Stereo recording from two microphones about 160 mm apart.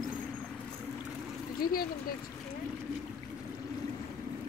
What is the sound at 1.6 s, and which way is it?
Speech, 70° left (ahead or behind).